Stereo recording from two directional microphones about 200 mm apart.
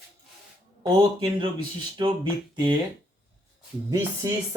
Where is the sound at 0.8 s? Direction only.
25° right (ahead or behind).